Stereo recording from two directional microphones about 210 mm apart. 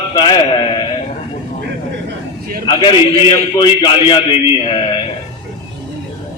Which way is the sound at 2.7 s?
20° left (ahead or behind).